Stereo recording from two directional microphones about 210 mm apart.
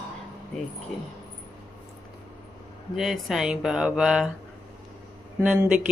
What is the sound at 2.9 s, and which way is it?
A man's voice, centre (ahead or behind).